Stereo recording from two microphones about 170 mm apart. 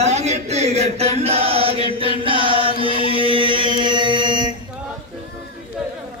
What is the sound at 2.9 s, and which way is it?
Chant, 30° left (ahead or behind).